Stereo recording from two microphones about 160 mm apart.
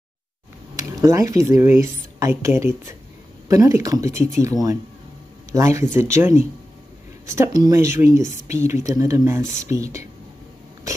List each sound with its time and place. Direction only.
1.0 s a woman's voice: 20° right (ahead or behind)
7.5 s a woman's voice: 20° right (ahead or behind)